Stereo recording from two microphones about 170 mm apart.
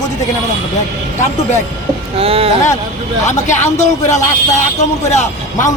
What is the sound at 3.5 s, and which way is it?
Speech, 45° left (ahead or behind).